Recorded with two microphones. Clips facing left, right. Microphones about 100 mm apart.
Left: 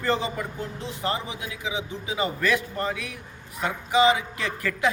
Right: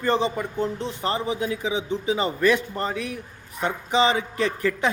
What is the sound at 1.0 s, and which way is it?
A man's voice, 35° right (ahead or behind).